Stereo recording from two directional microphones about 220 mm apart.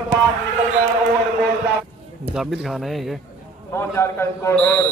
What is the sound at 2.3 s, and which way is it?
Speech, centre (ahead or behind).